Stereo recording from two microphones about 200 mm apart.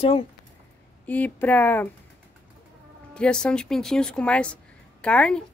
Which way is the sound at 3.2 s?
5° left (ahead or behind).